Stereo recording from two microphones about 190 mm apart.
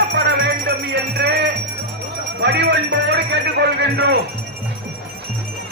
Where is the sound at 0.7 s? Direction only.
55° right (ahead or behind).